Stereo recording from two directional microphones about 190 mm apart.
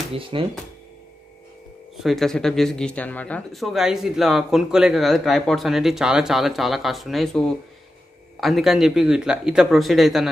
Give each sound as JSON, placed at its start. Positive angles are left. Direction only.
{"t": 0.1, "sound": "speech", "side_deg": -25}
{"t": 2.0, "sound": "speech", "side_deg": 0}